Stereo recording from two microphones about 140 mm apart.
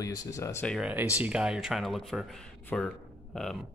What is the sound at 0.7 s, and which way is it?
Speech, 5° right (ahead or behind).